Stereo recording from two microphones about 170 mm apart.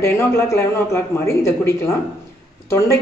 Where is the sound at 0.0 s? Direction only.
15° left (ahead or behind).